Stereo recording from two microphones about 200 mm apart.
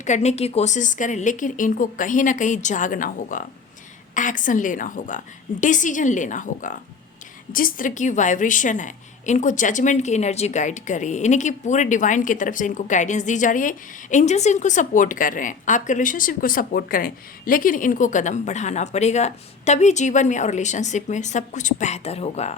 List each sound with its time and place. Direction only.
0.0 s a woman's voice: 35° left (ahead or behind)